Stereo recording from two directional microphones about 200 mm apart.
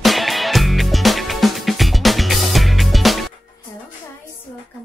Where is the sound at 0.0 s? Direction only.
Centre (ahead or behind).